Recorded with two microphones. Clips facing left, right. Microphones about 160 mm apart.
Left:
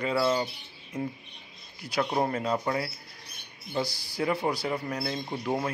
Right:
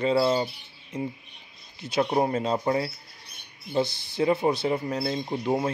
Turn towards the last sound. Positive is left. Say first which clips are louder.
# right 4 dB
turn(degrees=-25)  # may be behind; listen again after turning